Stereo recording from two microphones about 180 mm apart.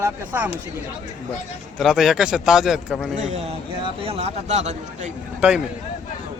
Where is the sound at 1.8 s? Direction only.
Centre (ahead or behind).